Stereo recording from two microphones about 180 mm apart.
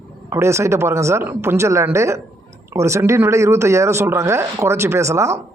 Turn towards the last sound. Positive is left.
turn(degrees=-15)  # may be behind; listen again after turning